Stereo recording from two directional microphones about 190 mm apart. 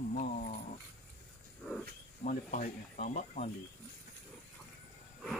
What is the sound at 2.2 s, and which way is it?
Speech, 40° left (ahead or behind).